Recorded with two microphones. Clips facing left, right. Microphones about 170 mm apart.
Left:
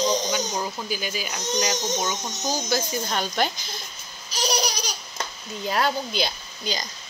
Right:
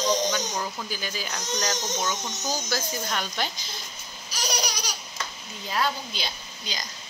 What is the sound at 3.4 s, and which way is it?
Speech, 50° left (ahead or behind).